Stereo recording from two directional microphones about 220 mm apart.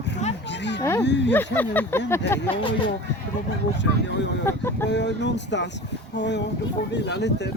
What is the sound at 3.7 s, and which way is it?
Speech, 55° left (ahead or behind).